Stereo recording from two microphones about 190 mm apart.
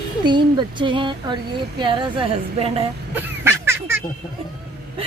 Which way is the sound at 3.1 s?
10° right (ahead or behind).